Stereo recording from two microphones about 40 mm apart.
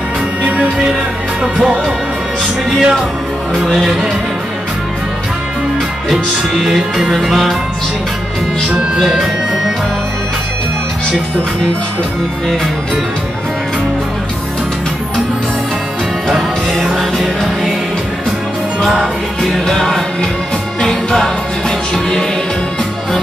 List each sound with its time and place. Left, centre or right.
2.7 s music: centre
6.6 s music: centre
7.2 s music: centre
8.9 s music: centre
16.3 s music: centre
18.8 s music: centre
19.4 s music: centre